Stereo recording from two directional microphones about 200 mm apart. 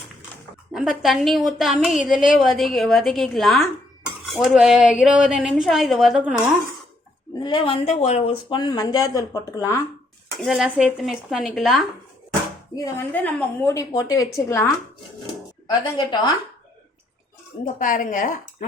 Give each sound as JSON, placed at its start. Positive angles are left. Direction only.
{"t": 0.7, "sound": "a woman's voice", "side_deg": -5}
{"t": 7.3, "sound": "a woman's voice", "side_deg": 25}
{"t": 10.4, "sound": "a woman's voice", "side_deg": 0}
{"t": 12.7, "sound": "a woman's voice", "side_deg": 15}
{"t": 17.7, "sound": "a woman's voice", "side_deg": 40}